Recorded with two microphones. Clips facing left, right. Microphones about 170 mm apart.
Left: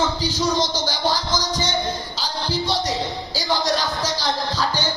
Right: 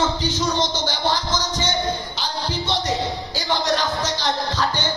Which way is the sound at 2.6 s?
10° left (ahead or behind).